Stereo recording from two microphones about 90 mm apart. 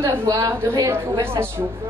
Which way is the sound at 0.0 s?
30° right (ahead or behind).